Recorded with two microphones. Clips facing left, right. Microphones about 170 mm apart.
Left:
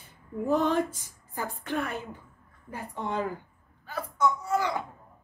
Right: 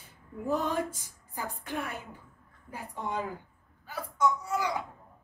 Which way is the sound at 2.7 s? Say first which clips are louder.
Left 3 dB; 65° left (ahead or behind).